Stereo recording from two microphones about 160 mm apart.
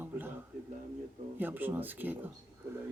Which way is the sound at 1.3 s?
10° right (ahead or behind).